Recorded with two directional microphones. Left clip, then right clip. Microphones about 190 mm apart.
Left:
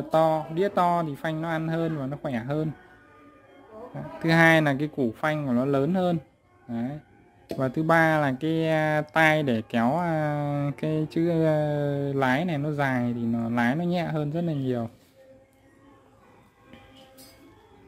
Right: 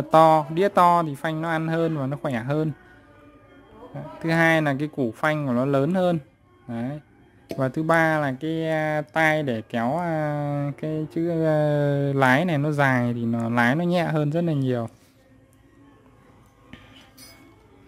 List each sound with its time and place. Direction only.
0.1 s speech: 30° right (ahead or behind)
3.9 s speech: 5° right (ahead or behind)
4.7 s speech: 20° right (ahead or behind)
7.9 s speech: 5° right (ahead or behind)
11.4 s speech: 25° right (ahead or behind)